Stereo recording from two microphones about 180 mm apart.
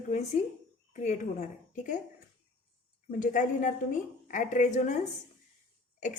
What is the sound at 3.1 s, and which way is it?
A woman's voice, 45° left (ahead or behind).